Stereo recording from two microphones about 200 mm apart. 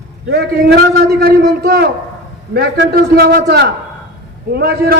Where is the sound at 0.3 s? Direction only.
55° right (ahead or behind).